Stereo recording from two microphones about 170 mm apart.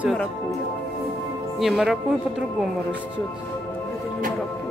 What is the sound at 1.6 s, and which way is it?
Speech, centre (ahead or behind).